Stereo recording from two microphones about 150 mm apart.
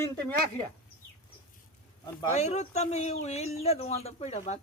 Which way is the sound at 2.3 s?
50° left (ahead or behind).